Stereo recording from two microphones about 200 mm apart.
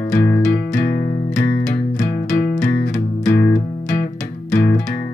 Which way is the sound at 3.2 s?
10° left (ahead or behind).